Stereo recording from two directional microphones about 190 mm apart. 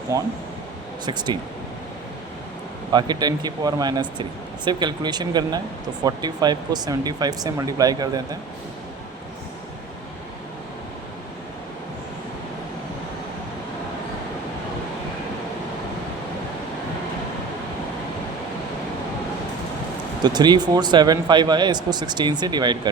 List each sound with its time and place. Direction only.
0.1 s speech: 15° right (ahead or behind)
2.9 s speech: 20° right (ahead or behind)
20.2 s speech: 20° right (ahead or behind)